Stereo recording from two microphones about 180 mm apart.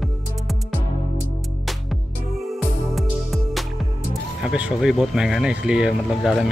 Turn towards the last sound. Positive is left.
turn(degrees=0)  # may be behind; listen again after turning